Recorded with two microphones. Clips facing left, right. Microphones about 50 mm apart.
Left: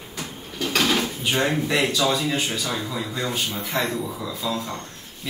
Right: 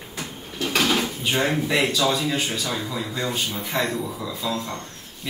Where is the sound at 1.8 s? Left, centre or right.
Centre.